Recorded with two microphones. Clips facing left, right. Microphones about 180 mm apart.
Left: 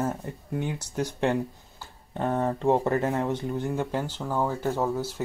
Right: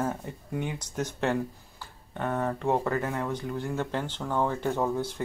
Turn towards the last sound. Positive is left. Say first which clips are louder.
# left 1 dB
turn(degrees=5)  # may be behind; listen again after turning